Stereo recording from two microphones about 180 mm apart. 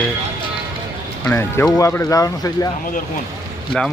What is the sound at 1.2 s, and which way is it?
Speech, 15° left (ahead or behind).